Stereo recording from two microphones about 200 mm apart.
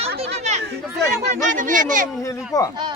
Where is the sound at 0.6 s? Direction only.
55° right (ahead or behind).